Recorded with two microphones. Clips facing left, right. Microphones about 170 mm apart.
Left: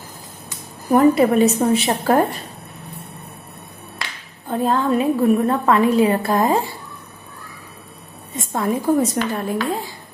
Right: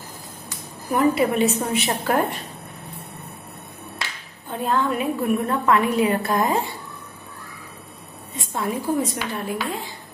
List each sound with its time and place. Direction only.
0.9 s a woman's voice: 40° left (ahead or behind)
4.5 s a woman's voice: 35° left (ahead or behind)
8.4 s a woman's voice: 45° left (ahead or behind)